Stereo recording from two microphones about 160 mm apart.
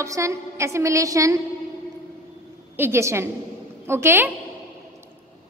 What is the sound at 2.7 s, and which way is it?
A woman's voice, 15° right (ahead or behind).